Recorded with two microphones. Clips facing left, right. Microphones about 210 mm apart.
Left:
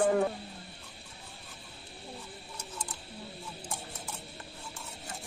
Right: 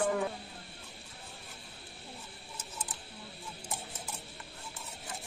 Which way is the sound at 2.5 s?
5° right (ahead or behind).